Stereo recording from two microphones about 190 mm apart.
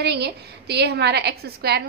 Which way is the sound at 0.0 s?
60° right (ahead or behind).